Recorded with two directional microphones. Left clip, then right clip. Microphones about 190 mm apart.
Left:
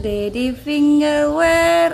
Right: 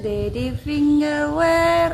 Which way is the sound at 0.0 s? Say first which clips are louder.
Left 3 dB; 40° left (ahead or behind).